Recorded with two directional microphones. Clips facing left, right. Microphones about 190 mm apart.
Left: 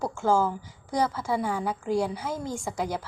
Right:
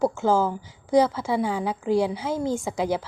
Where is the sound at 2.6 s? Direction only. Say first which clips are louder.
Right 5 dB; 5° right (ahead or behind).